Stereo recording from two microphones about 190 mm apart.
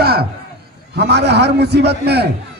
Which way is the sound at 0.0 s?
55° right (ahead or behind).